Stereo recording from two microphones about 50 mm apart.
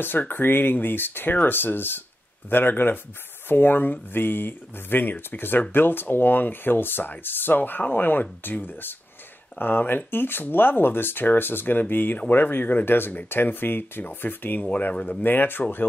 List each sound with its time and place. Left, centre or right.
0.0 s speech: left